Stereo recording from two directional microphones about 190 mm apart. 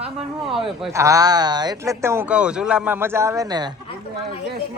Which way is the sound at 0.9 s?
15° right (ahead or behind).